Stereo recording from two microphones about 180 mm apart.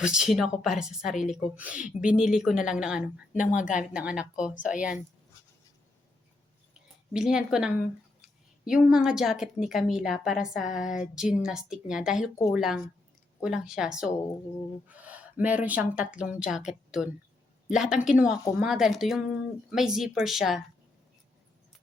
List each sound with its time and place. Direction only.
0.0 s a woman's voice: 5° right (ahead or behind)
3.3 s a woman's voice: 45° left (ahead or behind)
3.9 s a woman's voice: 5° right (ahead or behind)
7.1 s a woman's voice: 5° right (ahead or behind)